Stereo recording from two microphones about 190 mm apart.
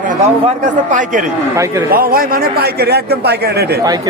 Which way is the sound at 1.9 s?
50° right (ahead or behind).